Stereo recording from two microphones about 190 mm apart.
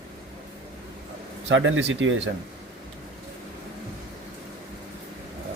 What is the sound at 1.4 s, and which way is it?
Speech, 80° right.